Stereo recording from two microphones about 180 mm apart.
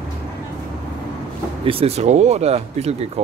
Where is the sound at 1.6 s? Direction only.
35° right (ahead or behind).